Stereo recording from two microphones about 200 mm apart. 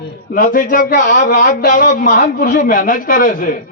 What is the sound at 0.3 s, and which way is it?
A man's voice, 40° left (ahead or behind).